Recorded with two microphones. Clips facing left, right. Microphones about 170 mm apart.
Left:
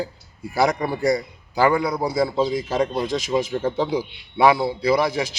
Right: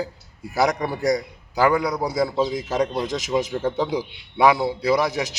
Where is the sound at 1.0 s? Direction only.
5° left (ahead or behind).